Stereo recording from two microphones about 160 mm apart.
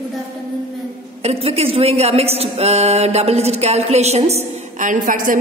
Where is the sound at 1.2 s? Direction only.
40° right (ahead or behind).